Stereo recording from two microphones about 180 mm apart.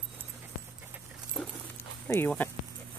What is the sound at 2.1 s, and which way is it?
Speech, 10° left (ahead or behind).